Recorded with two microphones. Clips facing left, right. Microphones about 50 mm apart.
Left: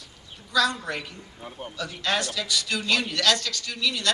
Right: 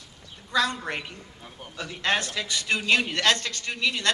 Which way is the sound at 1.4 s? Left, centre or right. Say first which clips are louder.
Left 6 dB; centre.